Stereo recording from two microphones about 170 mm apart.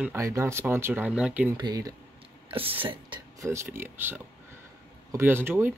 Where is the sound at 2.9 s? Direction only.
30° right (ahead or behind).